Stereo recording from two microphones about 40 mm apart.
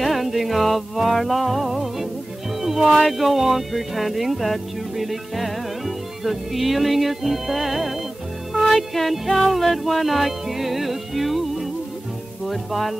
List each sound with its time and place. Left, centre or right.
0.0 s music: centre
2.6 s speech: centre